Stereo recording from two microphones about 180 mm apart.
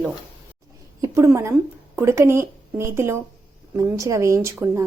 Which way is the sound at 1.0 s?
15° right (ahead or behind).